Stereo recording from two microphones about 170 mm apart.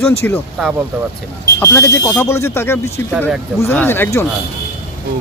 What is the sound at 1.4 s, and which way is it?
Speech, 15° left (ahead or behind).